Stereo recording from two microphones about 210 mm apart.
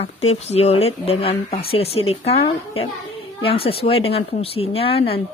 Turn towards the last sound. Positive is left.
turn(degrees=25)  # may be behind; listen again after turning